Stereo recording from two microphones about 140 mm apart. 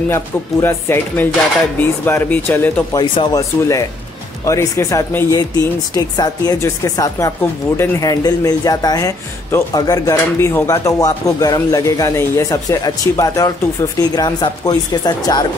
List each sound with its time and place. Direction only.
0.1 s speech: 15° left (ahead or behind)
2.9 s speech: 30° left (ahead or behind)
4.5 s speech: 20° left (ahead or behind)